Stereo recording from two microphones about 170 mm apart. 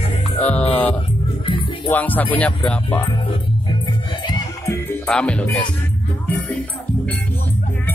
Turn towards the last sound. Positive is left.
turn(degrees=5)  # may be behind; listen again after turning